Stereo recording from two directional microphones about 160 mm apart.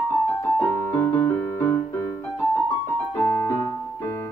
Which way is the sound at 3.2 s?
20° left (ahead or behind).